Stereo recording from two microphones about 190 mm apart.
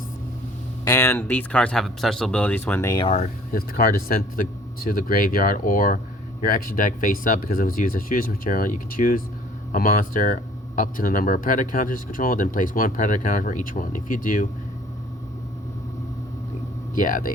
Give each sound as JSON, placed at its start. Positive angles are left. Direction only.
{"t": 0.9, "sound": "speech", "side_deg": 15}
{"t": 3.0, "sound": "speech", "side_deg": 35}
{"t": 3.5, "sound": "speech", "side_deg": 50}
{"t": 16.9, "sound": "speech", "side_deg": 45}